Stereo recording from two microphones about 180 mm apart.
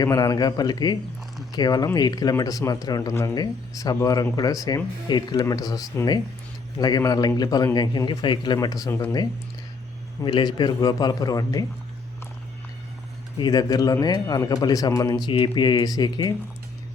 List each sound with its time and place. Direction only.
0.0 s a man's voice: 20° left (ahead or behind)
13.4 s a man's voice: 20° left (ahead or behind)